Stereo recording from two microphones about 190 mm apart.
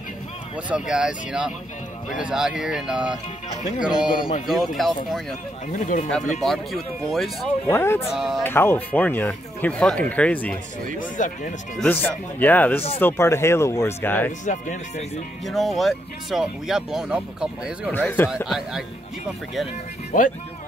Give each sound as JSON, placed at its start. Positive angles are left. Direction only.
{"t": 0.7, "sound": "speech", "side_deg": -5}
{"t": 5.7, "sound": "speech", "side_deg": 40}
{"t": 6.4, "sound": "speech", "side_deg": 0}
{"t": 7.6, "sound": "speech", "side_deg": 15}
{"t": 8.1, "sound": "speech", "side_deg": 0}
{"t": 8.5, "sound": "speech", "side_deg": 10}
{"t": 11.0, "sound": "speech", "side_deg": 45}
{"t": 11.8, "sound": "speech", "side_deg": 10}
{"t": 14.4, "sound": "speech", "side_deg": 40}
{"t": 15.4, "sound": "speech", "side_deg": 0}
{"t": 17.9, "sound": "speech", "side_deg": 10}
{"t": 18.3, "sound": "speech", "side_deg": 0}
{"t": 20.1, "sound": "speech", "side_deg": 45}